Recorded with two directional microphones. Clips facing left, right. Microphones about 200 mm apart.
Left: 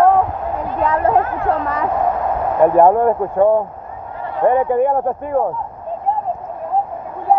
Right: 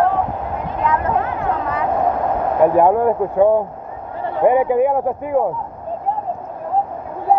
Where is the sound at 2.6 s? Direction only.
5° right (ahead or behind).